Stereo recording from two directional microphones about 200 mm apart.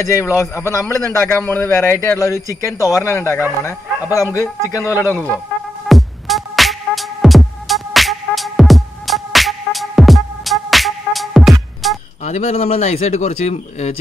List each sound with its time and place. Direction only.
0.0 s a man's voice: 15° left (ahead or behind)
5.9 s music: centre (ahead or behind)
12.3 s speech: 35° left (ahead or behind)